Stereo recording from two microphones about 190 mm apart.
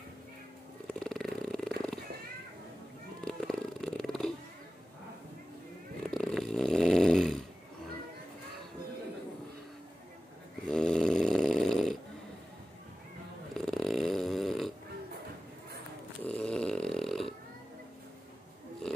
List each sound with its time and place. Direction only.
0.9 s a sound: centre (ahead or behind)
3.3 s purr: 5° left (ahead or behind)
6.0 s snoring: 5° left (ahead or behind)
10.7 s snoring: 5° left (ahead or behind)
13.6 s a sound: centre (ahead or behind)
16.3 s snoring: 5° left (ahead or behind)